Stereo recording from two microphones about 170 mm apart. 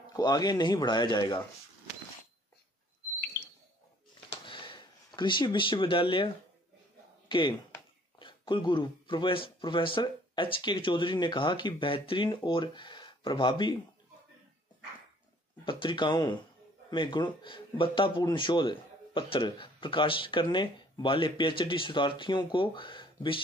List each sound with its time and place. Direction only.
0.0 s speech: 25° left (ahead or behind)
4.3 s a sound: 30° left (ahead or behind)
7.2 s speech: 25° left (ahead or behind)
15.6 s speech: 30° left (ahead or behind)